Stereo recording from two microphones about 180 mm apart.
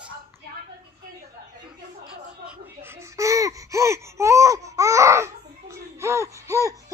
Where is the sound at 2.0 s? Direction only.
10° right (ahead or behind).